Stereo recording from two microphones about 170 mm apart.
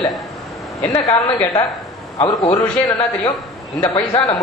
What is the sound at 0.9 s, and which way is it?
A man's voice, 20° left (ahead or behind).